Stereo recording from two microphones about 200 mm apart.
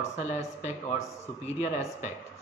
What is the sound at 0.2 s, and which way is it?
A man's voice, 35° left (ahead or behind).